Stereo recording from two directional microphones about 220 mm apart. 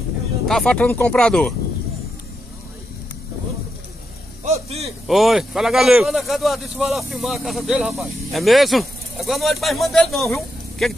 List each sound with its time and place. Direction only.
0.5 s a man's voice: 5° left (ahead or behind)
4.5 s a sound: 30° right (ahead or behind)
5.0 s a man's voice: centre (ahead or behind)